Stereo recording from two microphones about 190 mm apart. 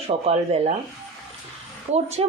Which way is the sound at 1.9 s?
35° right (ahead or behind).